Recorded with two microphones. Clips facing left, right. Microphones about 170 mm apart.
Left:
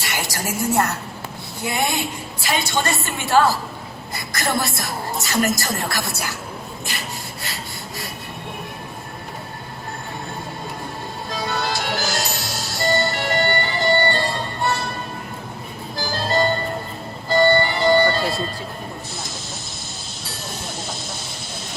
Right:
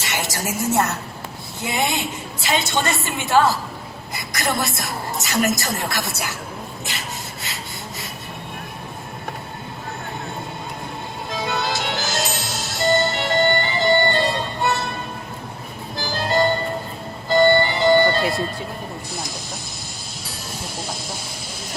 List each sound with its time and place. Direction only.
0.0 s a woman's voice: 20° right (ahead or behind)
4.1 s a sound: 20° right (ahead or behind)
4.6 s a woman's voice: 20° right (ahead or behind)
7.4 s rub: 20° right (ahead or behind)
11.3 s music: 20° right (ahead or behind)
16.0 s music: 20° right (ahead or behind)